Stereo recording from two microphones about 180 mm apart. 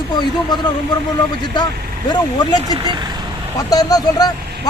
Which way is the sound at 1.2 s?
25° left (ahead or behind).